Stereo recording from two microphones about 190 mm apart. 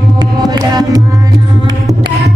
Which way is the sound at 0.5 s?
20° right (ahead or behind).